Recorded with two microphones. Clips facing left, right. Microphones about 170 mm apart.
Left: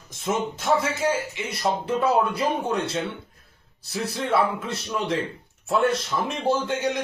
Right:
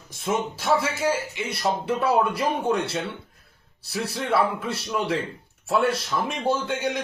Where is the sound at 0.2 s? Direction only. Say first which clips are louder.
Even; centre (ahead or behind).